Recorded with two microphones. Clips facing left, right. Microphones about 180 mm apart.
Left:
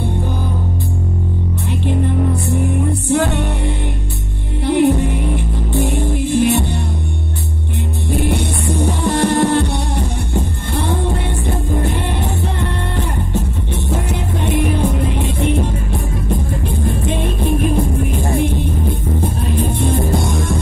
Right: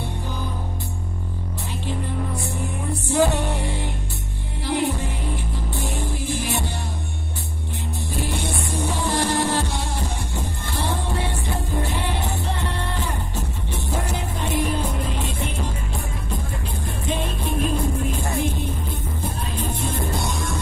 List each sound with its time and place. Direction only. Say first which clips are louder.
2.4 s music: left 10 dB; 65° left (ahead or behind)
4.6 s music: left 10 dB; 60° left (ahead or behind)
8.1 s music: left 9 dB; 60° left (ahead or behind)
16.8 s music: left 6 dB; 55° left (ahead or behind)